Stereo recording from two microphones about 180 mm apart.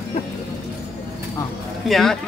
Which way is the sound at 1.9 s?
Centre (ahead or behind).